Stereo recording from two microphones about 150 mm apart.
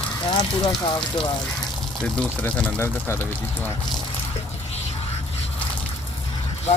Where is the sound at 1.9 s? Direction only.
5° left (ahead or behind).